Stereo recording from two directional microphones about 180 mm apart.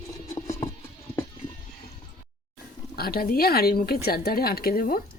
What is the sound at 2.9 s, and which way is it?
Speech, 55° left (ahead or behind).